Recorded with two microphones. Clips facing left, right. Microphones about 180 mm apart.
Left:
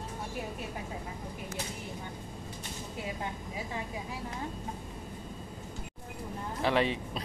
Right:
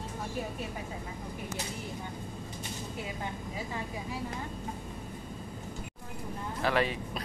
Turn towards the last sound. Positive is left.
turn(degrees=25)  # may be behind; listen again after turning